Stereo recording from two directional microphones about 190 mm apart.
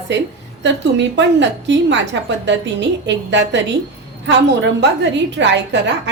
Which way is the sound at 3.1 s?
70° right (ahead or behind).